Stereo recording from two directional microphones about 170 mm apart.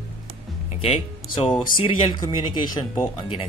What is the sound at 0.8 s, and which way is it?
Speech, 35° left (ahead or behind).